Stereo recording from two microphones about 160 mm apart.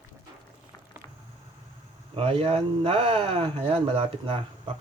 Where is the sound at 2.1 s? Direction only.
35° right (ahead or behind).